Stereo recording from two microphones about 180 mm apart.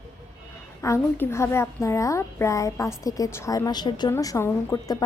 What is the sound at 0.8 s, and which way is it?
A child's voice, 15° left (ahead or behind).